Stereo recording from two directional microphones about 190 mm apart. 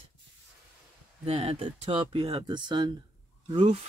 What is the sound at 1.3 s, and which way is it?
Speech, 30° right (ahead or behind).